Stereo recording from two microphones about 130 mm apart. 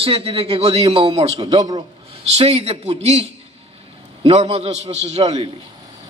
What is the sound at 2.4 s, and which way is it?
A man's voice, 50° right (ahead or behind).